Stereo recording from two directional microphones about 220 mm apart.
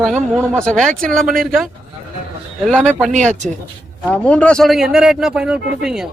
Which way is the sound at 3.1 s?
35° right (ahead or behind).